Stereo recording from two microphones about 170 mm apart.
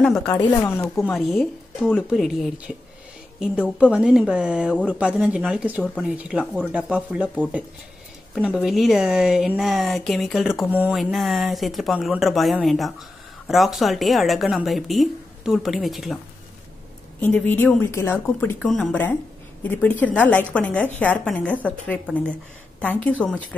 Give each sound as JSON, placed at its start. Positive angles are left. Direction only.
{"t": 0.0, "sound": "speech", "side_deg": 5}
{"t": 0.3, "sound": "speech", "side_deg": 20}
{"t": 0.9, "sound": "speech", "side_deg": 0}
{"t": 8.6, "sound": "speech", "side_deg": 0}
{"t": 17.2, "sound": "speech", "side_deg": 10}
{"t": 23.0, "sound": "speech", "side_deg": 5}